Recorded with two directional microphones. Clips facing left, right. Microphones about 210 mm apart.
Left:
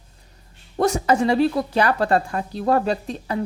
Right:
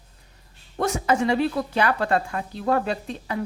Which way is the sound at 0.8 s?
35° left (ahead or behind).